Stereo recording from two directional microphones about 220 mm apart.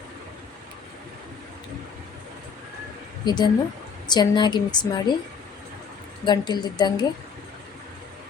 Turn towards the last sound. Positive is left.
turn(degrees=20)  # may be behind; listen again after turning